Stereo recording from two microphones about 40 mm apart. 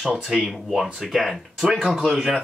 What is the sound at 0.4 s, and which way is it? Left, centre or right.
Speech, centre.